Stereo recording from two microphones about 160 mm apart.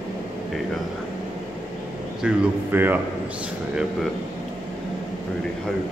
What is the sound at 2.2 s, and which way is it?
Speech, 10° right (ahead or behind).